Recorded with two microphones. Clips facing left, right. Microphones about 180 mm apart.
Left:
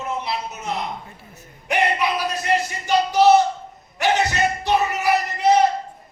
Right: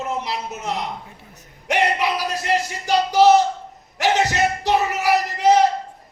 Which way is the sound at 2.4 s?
90° right.